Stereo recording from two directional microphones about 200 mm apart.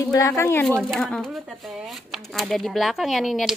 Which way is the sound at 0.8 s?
Centre (ahead or behind).